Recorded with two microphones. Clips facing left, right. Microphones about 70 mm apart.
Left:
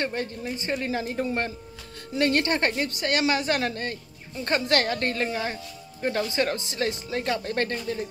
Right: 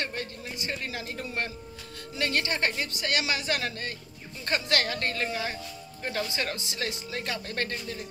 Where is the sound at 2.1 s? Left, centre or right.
Left; by 6.3 s centre.